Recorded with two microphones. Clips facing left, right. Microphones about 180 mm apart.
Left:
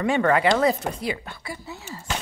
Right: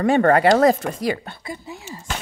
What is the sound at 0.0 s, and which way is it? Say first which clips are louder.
Speech: right 5 dB; 40° right (ahead or behind).